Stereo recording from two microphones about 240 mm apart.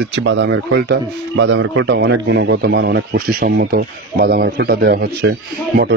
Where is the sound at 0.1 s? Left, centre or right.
Right.